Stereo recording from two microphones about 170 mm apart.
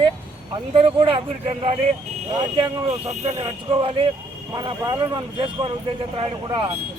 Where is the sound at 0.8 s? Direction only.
30° right (ahead or behind).